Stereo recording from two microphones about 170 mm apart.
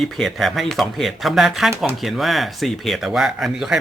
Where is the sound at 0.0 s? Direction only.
Centre (ahead or behind).